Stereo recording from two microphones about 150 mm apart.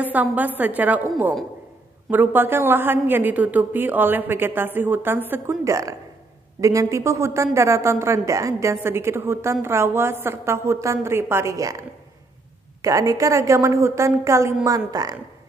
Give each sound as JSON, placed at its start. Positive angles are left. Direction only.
{"t": 0.0, "sound": "a woman's voice", "side_deg": -10}
{"t": 12.8, "sound": "a woman's voice", "side_deg": -20}